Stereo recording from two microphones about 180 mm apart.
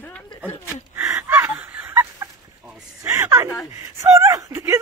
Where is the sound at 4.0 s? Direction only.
15° right (ahead or behind).